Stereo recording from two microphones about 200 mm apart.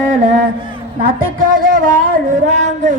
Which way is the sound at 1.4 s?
45° right (ahead or behind).